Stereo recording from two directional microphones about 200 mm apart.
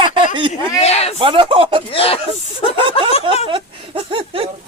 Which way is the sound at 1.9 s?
30° left (ahead or behind).